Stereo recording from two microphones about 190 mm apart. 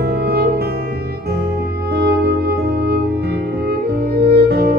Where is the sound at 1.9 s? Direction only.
55° right (ahead or behind).